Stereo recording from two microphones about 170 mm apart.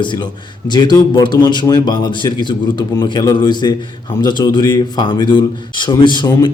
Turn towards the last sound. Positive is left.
turn(degrees=25)  # may be behind; listen again after turning